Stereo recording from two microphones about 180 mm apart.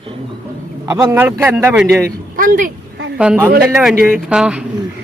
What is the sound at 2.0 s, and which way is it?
Speech, 50° right (ahead or behind).